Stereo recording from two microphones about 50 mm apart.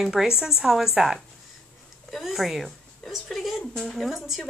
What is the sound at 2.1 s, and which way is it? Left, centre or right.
Speech, centre.